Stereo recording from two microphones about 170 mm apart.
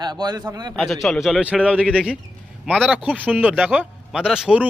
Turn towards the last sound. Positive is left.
turn(degrees=-5)  # may be behind; listen again after turning